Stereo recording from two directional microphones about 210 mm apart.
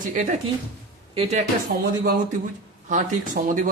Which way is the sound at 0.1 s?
35° right (ahead or behind).